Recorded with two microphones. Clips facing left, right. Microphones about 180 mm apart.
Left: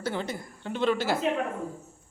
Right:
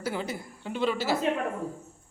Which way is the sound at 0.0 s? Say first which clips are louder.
Left 1 dB; 10° right (ahead or behind).